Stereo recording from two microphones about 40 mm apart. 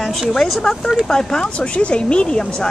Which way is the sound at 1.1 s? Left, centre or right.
Centre.